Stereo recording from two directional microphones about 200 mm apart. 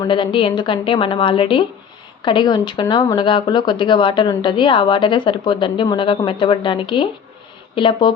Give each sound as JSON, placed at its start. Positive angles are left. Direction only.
{"t": 0.0, "sound": "speech", "side_deg": 25}